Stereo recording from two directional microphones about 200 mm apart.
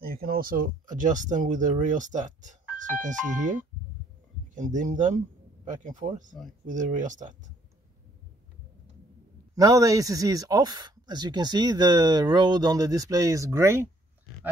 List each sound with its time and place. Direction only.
0.0 s speech: 50° right (ahead or behind)
9.6 s speech: 15° right (ahead or behind)